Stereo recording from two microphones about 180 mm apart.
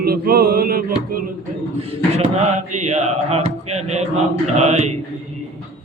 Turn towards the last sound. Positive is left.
turn(degrees=-40)  # may be behind; listen again after turning